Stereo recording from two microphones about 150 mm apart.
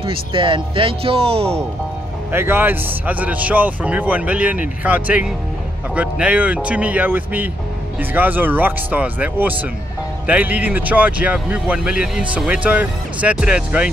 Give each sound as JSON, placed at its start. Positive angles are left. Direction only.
{"t": 0.0, "sound": "speech", "side_deg": -35}
{"t": 2.3, "sound": "speech", "side_deg": -15}